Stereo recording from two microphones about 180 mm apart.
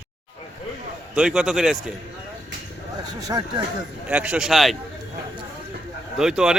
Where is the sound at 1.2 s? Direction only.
5° right (ahead or behind).